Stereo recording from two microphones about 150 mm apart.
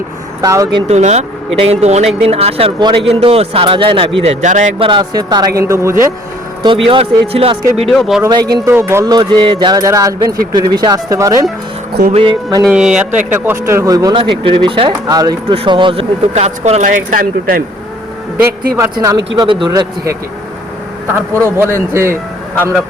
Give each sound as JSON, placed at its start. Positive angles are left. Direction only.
{"t": 0.4, "sound": "speech", "side_deg": -20}
{"t": 0.8, "sound": "speech", "side_deg": -45}
{"t": 4.8, "sound": "speech", "side_deg": -35}
{"t": 6.6, "sound": "speech", "side_deg": -35}
{"t": 7.9, "sound": "speech", "side_deg": 0}
{"t": 8.3, "sound": "speech", "side_deg": -30}
{"t": 12.1, "sound": "speech", "side_deg": -35}
{"t": 12.6, "sound": "speech", "side_deg": -5}
{"t": 14.2, "sound": "speech", "side_deg": -35}
{"t": 17.2, "sound": "speech", "side_deg": -70}
{"t": 19.5, "sound": "speech", "side_deg": -35}
{"t": 21.1, "sound": "speech", "side_deg": -15}